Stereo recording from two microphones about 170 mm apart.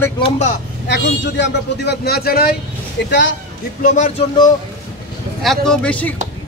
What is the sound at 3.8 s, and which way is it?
Speech, 45° left (ahead or behind).